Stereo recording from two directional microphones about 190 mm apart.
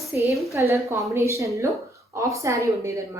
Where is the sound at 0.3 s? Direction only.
15° right (ahead or behind).